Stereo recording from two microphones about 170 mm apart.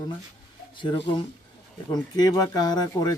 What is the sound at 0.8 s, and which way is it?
Speech, 30° left (ahead or behind).